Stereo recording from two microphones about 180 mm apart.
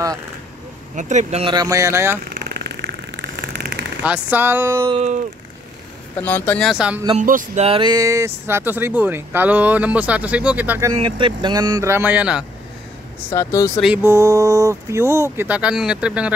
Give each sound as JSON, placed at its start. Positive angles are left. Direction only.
{"t": 0.9, "sound": "speech", "side_deg": -40}
{"t": 1.5, "sound": "speech", "side_deg": -20}
{"t": 2.3, "sound": "vehicle", "side_deg": -65}
{"t": 4.0, "sound": "speech", "side_deg": -10}
{"t": 4.8, "sound": "speech", "side_deg": -35}
{"t": 6.1, "sound": "speech", "side_deg": 10}
{"t": 7.2, "sound": "speech", "side_deg": -45}
{"t": 7.6, "sound": "speech", "side_deg": -30}
{"t": 11.0, "sound": "speech", "side_deg": -25}
{"t": 13.3, "sound": "speech", "side_deg": 15}
{"t": 14.0, "sound": "speech", "side_deg": -15}